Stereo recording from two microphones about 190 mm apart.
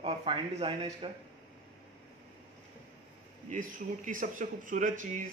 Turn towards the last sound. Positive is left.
turn(degrees=-45)  # may be behind; listen again after turning